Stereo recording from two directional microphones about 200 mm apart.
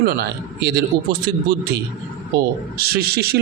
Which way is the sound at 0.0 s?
50° right (ahead or behind).